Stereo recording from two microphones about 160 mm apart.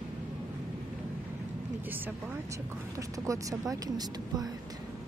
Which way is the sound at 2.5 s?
20° right (ahead or behind).